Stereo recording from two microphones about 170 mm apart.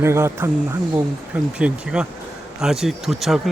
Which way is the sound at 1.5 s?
5° right (ahead or behind).